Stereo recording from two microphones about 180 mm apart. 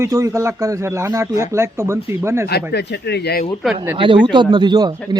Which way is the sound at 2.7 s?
65° left (ahead or behind).